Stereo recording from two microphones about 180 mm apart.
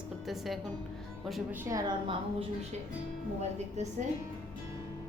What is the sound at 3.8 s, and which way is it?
Speech, 40° right (ahead or behind).